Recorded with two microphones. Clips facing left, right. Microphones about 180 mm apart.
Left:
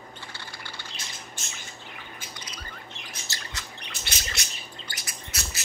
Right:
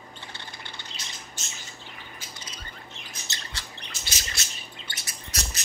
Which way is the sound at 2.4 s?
25° right (ahead or behind).